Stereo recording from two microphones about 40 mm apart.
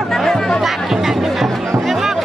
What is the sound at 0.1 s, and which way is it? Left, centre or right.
Music, centre.